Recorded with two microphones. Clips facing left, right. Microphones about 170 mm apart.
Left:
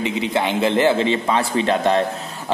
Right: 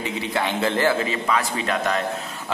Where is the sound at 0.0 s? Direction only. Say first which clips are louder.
Left 4 dB; 20° left (ahead or behind).